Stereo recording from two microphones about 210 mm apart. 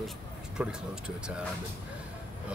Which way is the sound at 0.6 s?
5° right (ahead or behind).